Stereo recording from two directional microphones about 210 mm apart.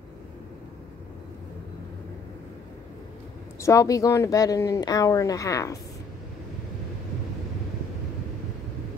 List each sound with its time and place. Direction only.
3.6 s speech: 15° left (ahead or behind)